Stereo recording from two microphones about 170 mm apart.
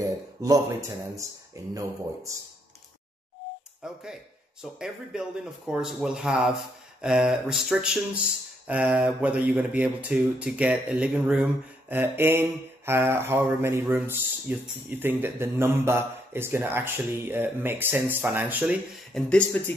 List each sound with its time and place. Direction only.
0.0 s speech: 20° right (ahead or behind)
3.8 s speech: 5° right (ahead or behind)
19.1 s speech: 5° left (ahead or behind)